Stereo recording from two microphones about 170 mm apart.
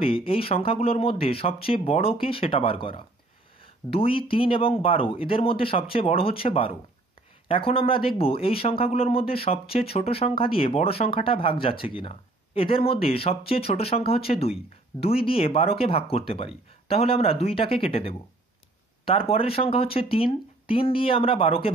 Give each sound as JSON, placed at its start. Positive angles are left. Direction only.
{"t": 0.0, "sound": "speech", "side_deg": 35}